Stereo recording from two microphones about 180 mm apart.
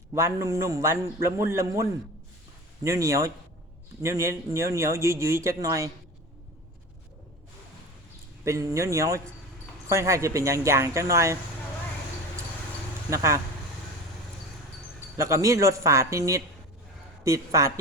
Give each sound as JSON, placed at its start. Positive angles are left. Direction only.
{"t": 0.1, "sound": "speech", "side_deg": -15}
{"t": 8.4, "sound": "speech", "side_deg": -15}
{"t": 13.1, "sound": "speech", "side_deg": -15}
{"t": 15.2, "sound": "speech", "side_deg": -15}